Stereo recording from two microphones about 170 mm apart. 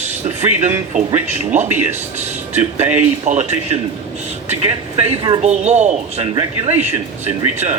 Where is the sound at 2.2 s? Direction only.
40° right (ahead or behind).